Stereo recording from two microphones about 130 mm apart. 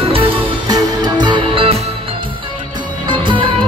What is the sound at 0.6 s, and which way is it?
Music, 35° right (ahead or behind).